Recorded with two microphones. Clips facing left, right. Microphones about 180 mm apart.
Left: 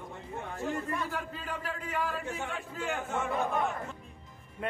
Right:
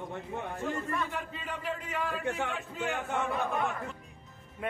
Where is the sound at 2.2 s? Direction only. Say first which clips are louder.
Right 4 dB; 70° right (ahead or behind).